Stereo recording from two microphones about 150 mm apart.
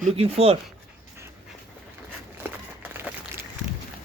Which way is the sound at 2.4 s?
10° right (ahead or behind).